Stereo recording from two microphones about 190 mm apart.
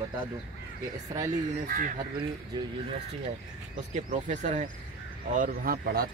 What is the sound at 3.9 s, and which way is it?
Speech, 40° right (ahead or behind).